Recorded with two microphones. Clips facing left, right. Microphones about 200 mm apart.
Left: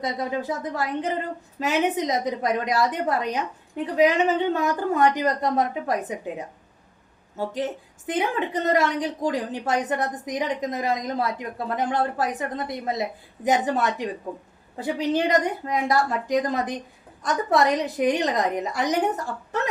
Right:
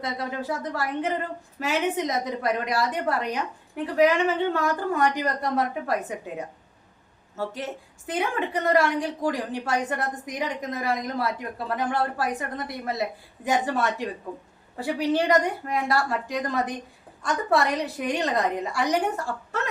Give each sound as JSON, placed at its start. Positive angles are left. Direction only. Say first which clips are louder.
{"t": 0.0, "sound": "a woman's voice", "louder": "left 3 dB", "side_deg": 20}
{"t": 7.3, "sound": "a woman's voice", "louder": "left 4 dB", "side_deg": 20}